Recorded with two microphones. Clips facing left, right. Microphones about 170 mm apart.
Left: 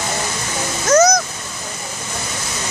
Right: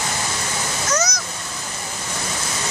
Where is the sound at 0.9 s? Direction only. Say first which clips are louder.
Left 12 dB; 50° left (ahead or behind).